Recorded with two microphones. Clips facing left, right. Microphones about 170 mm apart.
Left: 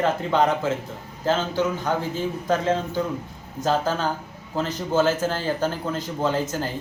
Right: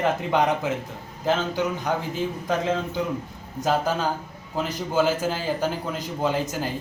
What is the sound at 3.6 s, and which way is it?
A man's voice, 15° right (ahead or behind).